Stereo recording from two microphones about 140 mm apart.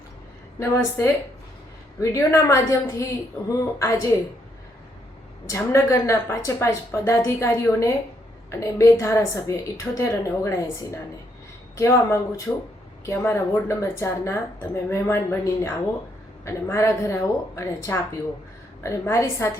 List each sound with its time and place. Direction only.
0.6 s a woman's voice: 20° left (ahead or behind)
5.5 s a woman's voice: 20° left (ahead or behind)